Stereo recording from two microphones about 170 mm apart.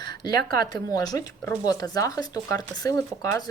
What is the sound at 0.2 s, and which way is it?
Speech, 25° left (ahead or behind).